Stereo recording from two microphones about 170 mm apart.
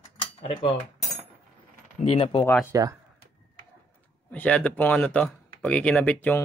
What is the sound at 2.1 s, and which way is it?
Speech, 30° left (ahead or behind).